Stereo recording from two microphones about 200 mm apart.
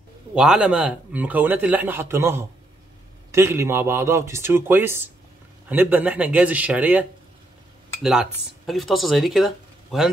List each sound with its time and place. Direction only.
0.3 s a man's voice: 5° right (ahead or behind)